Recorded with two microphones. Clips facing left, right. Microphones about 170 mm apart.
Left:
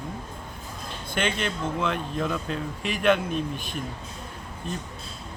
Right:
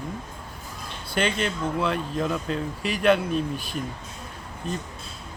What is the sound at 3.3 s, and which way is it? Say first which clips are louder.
Speech: right 2 dB; 35° right (ahead or behind).